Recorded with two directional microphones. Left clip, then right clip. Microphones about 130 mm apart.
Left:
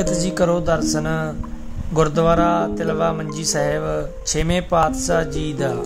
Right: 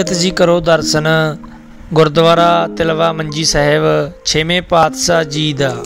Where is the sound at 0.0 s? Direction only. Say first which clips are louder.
Right 7 dB; 35° right (ahead or behind).